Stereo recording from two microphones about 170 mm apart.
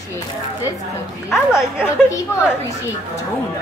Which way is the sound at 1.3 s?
5° right (ahead or behind).